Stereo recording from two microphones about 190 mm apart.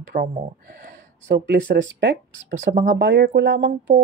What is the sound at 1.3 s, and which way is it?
Speech, 60° right (ahead or behind).